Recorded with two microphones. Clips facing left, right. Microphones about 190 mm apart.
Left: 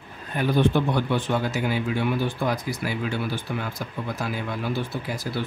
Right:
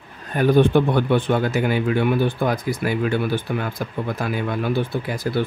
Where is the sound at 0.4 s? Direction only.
50° right (ahead or behind).